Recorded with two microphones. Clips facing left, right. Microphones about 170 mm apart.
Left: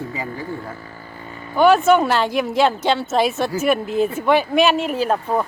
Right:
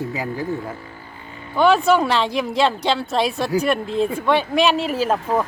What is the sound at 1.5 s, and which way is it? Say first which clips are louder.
A woman's voice: left 2 dB; 5° left (ahead or behind).